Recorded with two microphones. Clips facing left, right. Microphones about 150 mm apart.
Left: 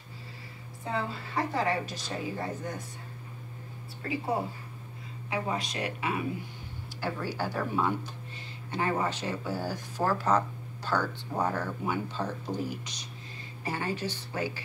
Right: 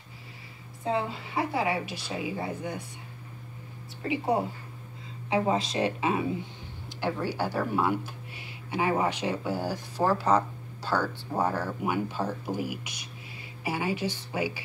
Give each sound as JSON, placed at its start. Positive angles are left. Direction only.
{"t": 0.8, "sound": "speech", "side_deg": -15}
{"t": 4.0, "sound": "speech", "side_deg": -20}
{"t": 7.0, "sound": "speech", "side_deg": -15}